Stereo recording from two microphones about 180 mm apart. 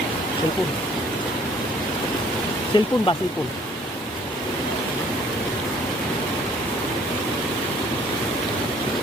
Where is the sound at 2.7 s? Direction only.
25° left (ahead or behind).